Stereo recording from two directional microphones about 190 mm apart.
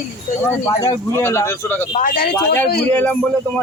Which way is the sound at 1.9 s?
45° left (ahead or behind).